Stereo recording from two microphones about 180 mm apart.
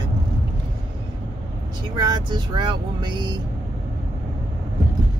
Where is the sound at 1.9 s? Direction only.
25° right (ahead or behind).